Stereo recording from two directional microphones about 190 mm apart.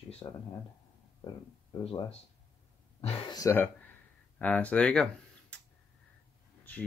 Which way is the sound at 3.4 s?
10° left (ahead or behind).